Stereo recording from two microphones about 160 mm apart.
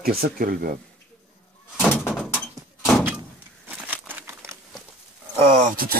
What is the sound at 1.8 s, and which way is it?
Door, centre (ahead or behind).